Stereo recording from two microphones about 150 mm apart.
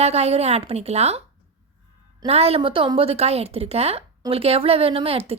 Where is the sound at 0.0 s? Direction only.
45° right (ahead or behind).